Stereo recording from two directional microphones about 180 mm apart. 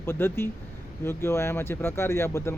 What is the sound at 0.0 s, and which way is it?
Speech, 15° left (ahead or behind).